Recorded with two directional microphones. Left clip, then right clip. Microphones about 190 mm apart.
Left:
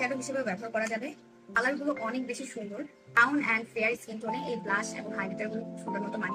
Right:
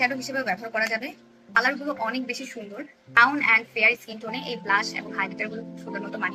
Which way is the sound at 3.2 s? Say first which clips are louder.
Right 7 dB; 20° left (ahead or behind).